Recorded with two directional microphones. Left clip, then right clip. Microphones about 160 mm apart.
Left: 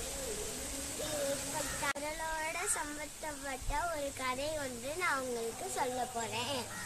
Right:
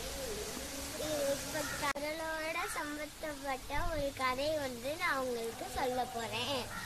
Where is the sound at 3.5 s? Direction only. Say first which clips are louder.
Left 1 dB; 15° left (ahead or behind).